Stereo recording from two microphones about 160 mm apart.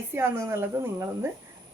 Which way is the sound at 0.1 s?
15° right (ahead or behind).